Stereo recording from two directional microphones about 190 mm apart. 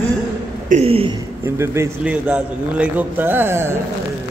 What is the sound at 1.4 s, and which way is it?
A man's voice, 15° right (ahead or behind).